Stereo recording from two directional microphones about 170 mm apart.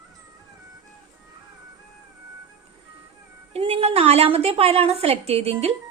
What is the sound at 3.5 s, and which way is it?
A woman's voice, 35° right (ahead or behind).